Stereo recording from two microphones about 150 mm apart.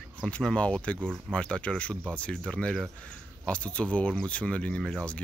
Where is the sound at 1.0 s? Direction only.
5° right (ahead or behind).